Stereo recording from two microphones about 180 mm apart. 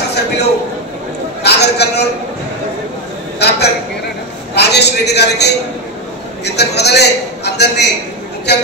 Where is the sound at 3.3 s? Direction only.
65° left (ahead or behind).